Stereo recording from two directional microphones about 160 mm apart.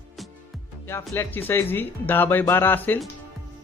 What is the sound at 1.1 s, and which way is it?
Speech, 15° left (ahead or behind).